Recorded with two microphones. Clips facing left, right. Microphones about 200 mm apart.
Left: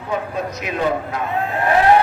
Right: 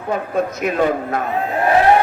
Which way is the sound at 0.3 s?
50° right (ahead or behind).